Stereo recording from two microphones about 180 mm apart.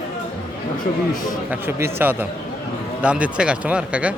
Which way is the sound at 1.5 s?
15° right (ahead or behind).